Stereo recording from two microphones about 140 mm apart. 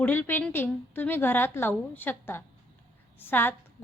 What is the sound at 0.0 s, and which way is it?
A woman's voice, 15° left (ahead or behind).